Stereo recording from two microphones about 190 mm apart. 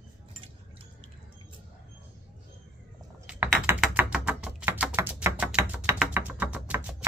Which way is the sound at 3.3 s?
10° right (ahead or behind).